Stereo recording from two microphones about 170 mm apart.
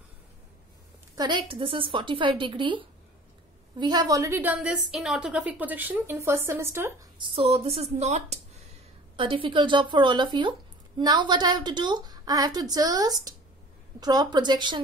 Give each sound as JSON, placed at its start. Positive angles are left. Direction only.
{"t": 1.1, "sound": "a woman's voice", "side_deg": -25}
{"t": 4.4, "sound": "a woman's voice", "side_deg": -10}
{"t": 7.2, "sound": "a woman's voice", "side_deg": -35}